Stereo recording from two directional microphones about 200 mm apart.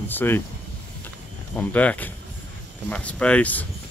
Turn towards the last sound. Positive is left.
turn(degrees=5)  # may be behind; listen again after turning